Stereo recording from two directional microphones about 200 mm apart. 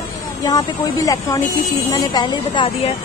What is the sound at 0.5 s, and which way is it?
A woman's voice, 20° left (ahead or behind).